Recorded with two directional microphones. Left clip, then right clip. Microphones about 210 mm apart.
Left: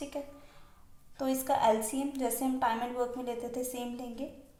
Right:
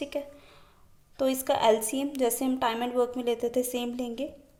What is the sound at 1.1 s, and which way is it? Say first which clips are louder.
A woman's voice: right 4 dB; 45° right (ahead or behind).